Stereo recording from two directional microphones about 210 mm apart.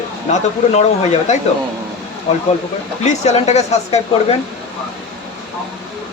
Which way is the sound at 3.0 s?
30° left (ahead or behind).